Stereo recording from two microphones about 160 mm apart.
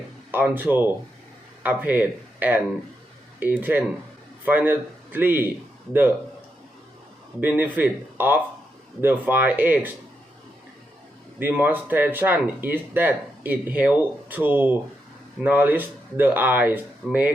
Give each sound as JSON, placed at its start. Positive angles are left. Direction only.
{"t": 0.3, "sound": "speech", "side_deg": -10}
{"t": 7.4, "sound": "speech", "side_deg": -10}
{"t": 11.3, "sound": "speech", "side_deg": -10}